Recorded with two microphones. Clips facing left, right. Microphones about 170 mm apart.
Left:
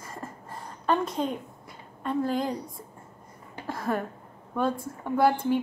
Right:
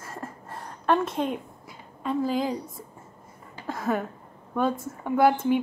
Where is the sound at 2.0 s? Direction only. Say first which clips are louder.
Right 1 dB; centre (ahead or behind).